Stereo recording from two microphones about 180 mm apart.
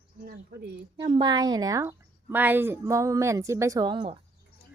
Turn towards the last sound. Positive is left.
turn(degrees=-25)  # may be behind; listen again after turning